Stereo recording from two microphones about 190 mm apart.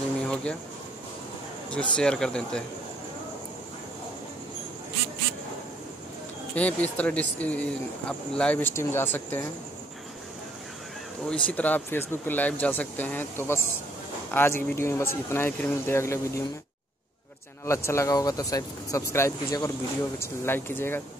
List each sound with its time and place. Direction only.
0.3 s a sound: 5° left (ahead or behind)
1.7 s speech: 5° left (ahead or behind)
6.5 s speech: 10° left (ahead or behind)
11.2 s speech: 5° left (ahead or behind)
17.6 s speech: 15° left (ahead or behind)